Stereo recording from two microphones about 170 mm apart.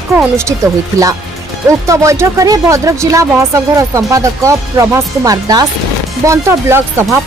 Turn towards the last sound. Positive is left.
turn(degrees=-15)  # may be behind; listen again after turning